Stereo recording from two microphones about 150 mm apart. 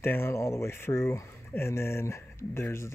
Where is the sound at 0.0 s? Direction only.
15° left (ahead or behind).